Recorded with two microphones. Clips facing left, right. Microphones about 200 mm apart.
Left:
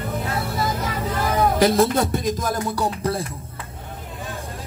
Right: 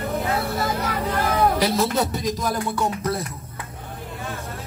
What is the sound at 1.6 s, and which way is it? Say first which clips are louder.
Speech: left 4 dB; 50° left (ahead or behind).